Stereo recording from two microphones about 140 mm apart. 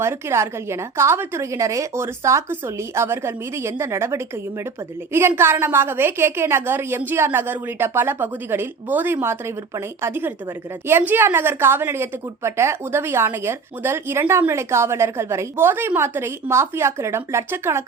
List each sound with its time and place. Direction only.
0.0 s a woman's voice: 20° right (ahead or behind)